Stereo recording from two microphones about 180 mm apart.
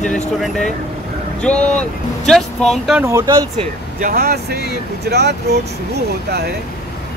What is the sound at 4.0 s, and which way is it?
Speech, 55° right (ahead or behind).